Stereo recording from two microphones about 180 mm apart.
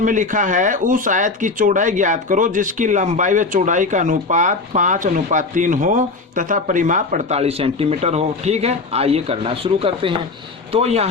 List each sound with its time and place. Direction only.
0.0 s speech: 45° right (ahead or behind)